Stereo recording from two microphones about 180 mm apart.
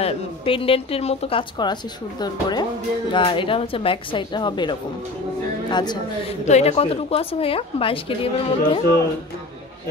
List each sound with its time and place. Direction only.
0.0 s a woman's voice: 30° left (ahead or behind)
6.4 s a woman's voice: 40° left (ahead or behind)